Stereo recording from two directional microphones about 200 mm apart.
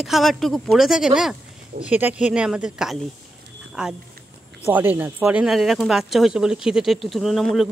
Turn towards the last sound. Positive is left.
turn(degrees=0)  # may be behind; listen again after turning